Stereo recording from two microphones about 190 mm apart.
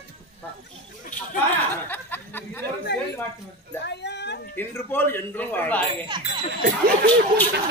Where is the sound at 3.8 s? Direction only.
65° left (ahead or behind).